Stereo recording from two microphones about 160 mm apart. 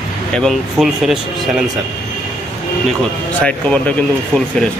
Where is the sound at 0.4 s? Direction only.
Centre (ahead or behind).